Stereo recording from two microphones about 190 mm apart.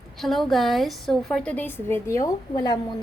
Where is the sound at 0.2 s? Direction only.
Centre (ahead or behind).